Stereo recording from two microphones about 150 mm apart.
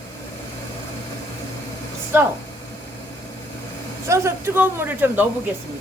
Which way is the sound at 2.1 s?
15° right (ahead or behind).